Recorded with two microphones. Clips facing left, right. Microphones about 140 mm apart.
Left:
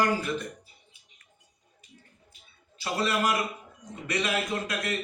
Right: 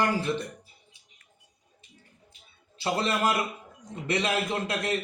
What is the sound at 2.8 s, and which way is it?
A man's voice, 25° right (ahead or behind).